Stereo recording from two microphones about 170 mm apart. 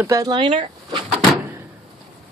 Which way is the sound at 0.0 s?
20° right (ahead or behind).